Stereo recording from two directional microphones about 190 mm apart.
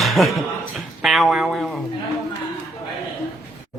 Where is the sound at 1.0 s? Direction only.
Centre (ahead or behind).